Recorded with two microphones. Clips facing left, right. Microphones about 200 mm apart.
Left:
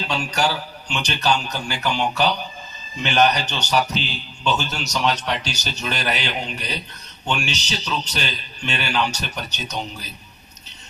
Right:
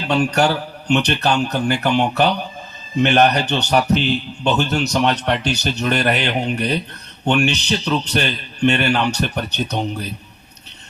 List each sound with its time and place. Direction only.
0.1 s a man's voice: 60° right (ahead or behind)